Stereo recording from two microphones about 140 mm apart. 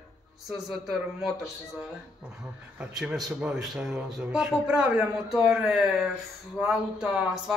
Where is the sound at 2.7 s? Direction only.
5° right (ahead or behind).